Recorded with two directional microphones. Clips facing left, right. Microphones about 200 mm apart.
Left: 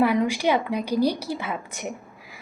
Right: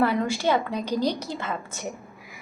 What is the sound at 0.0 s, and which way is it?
A woman's voice, 15° left (ahead or behind).